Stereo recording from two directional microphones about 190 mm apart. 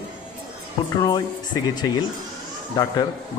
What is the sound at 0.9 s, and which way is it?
A man's voice, 20° left (ahead or behind).